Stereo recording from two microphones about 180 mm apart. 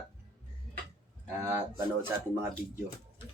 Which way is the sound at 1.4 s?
15° right (ahead or behind).